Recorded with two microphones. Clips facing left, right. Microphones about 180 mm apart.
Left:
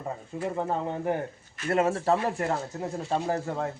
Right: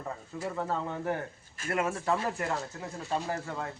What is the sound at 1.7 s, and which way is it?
Speech, 30° left (ahead or behind).